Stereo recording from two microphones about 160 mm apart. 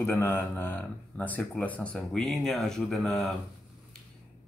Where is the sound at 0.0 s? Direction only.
15° left (ahead or behind).